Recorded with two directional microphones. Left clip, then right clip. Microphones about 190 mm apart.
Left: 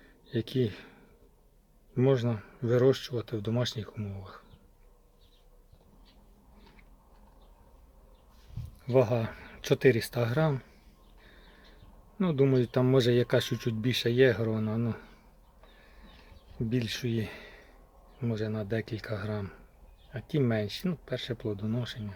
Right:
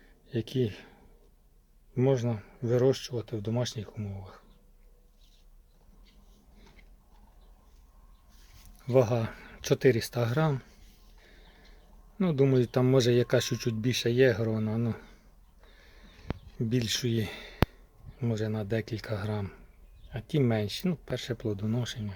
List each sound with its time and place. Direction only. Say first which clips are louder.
0.3 s speech: even; 5° right (ahead or behind)
2.0 s speech: left 1 dB; 5° right (ahead or behind)
8.9 s speech: right 1 dB; 15° right (ahead or behind)
12.2 s speech: right 1 dB; 15° right (ahead or behind)
16.6 s speech: right 3 dB; 20° right (ahead or behind)